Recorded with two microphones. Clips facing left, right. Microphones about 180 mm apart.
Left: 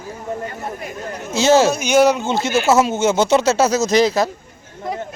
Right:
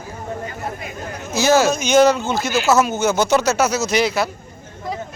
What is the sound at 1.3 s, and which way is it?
Speech, 25° left (ahead or behind).